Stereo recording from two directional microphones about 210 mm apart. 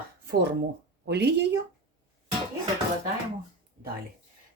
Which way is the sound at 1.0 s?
50° right (ahead or behind).